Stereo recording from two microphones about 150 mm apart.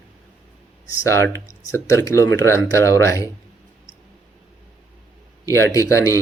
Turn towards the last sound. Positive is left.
turn(degrees=20)  # may be behind; listen again after turning